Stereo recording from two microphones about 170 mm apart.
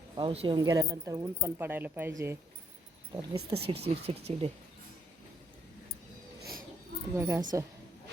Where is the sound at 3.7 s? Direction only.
75° right (ahead or behind).